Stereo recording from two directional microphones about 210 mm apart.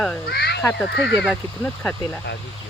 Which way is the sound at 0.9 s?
55° left (ahead or behind).